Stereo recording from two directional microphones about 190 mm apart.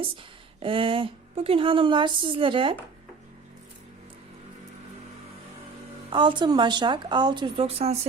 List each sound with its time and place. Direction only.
0.6 s a woman's voice: 30° right (ahead or behind)
6.1 s a woman's voice: 25° right (ahead or behind)